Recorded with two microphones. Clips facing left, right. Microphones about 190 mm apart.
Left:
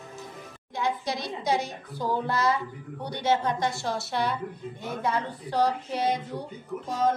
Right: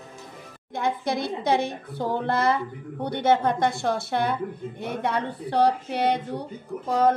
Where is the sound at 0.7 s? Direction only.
55° right (ahead or behind).